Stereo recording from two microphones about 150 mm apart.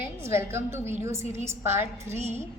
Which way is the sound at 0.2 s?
15° right (ahead or behind).